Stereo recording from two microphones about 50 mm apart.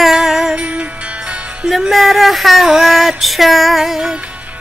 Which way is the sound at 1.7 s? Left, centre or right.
Centre.